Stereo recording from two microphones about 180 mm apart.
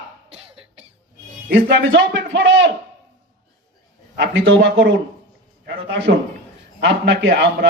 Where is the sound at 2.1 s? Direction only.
80° right.